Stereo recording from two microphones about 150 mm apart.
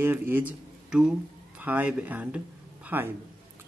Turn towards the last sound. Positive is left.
turn(degrees=-10)  # may be behind; listen again after turning